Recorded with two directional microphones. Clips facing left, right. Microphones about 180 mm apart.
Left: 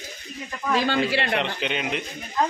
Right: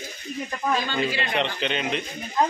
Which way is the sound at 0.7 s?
80° left.